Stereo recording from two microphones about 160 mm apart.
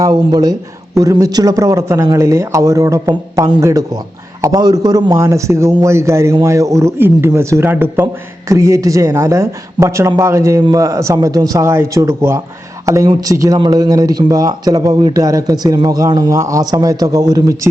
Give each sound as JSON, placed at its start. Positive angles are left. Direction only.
{"t": 0.0, "sound": "speech", "side_deg": -25}